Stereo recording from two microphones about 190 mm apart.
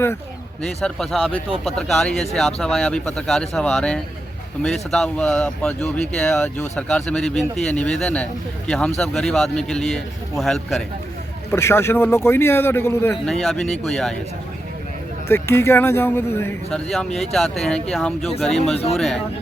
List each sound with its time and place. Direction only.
0.6 s speech: 5° left (ahead or behind)
11.5 s a man's voice: 15° left (ahead or behind)
15.3 s a man's voice: 15° left (ahead or behind)
18.7 s speech: 30° left (ahead or behind)
18.9 s speech: centre (ahead or behind)